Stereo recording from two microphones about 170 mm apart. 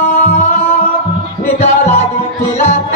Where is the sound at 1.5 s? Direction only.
40° left (ahead or behind).